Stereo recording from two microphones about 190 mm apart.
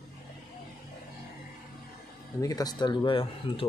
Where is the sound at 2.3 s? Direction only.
20° left (ahead or behind).